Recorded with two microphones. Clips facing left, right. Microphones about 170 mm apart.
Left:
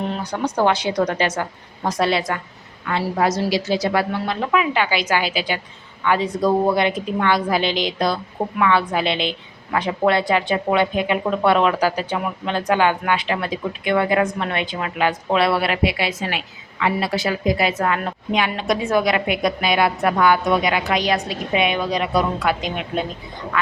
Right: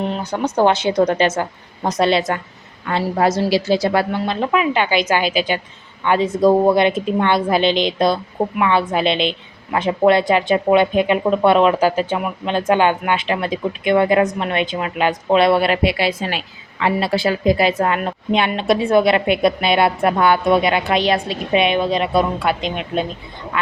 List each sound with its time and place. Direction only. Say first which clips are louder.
0.2 s speech: right 4 dB; 25° right (ahead or behind)